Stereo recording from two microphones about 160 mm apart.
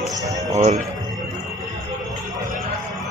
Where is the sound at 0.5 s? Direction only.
40° right (ahead or behind).